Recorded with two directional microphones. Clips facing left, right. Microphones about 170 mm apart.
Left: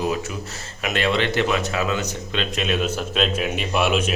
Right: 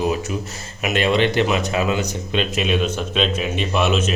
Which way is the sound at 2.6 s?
Centre (ahead or behind).